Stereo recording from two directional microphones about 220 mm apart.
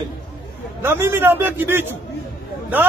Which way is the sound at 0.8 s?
10° right (ahead or behind).